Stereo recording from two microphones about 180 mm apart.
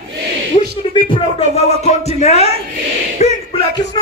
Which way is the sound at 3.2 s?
40° left (ahead or behind).